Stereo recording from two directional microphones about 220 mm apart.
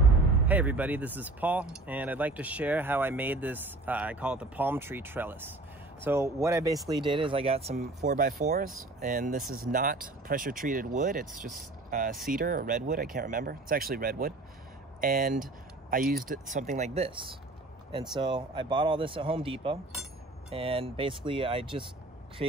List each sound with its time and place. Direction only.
0.5 s speech: 5° right (ahead or behind); by 7.7 s 25° right (ahead or behind)
8.0 s speech: 35° right (ahead or behind)